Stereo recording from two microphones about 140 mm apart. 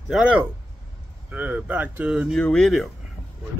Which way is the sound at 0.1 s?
10° right (ahead or behind).